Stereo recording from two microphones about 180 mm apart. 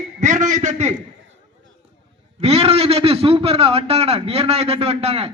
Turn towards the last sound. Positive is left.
turn(degrees=-35)  # may be behind; listen again after turning